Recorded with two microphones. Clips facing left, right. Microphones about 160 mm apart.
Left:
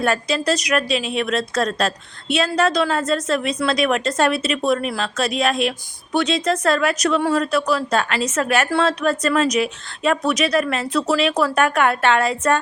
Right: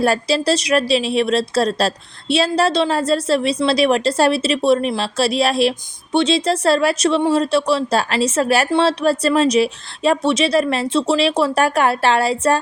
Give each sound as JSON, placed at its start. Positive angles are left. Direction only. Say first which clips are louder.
{"t": 0.0, "sound": "a woman's voice", "louder": "right 3 dB", "side_deg": -30}